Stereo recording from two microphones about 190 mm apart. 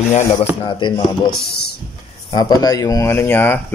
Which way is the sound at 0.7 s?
25° left (ahead or behind).